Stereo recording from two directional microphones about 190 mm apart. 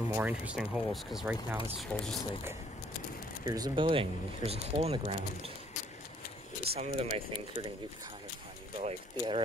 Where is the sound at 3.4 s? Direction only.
20° right (ahead or behind).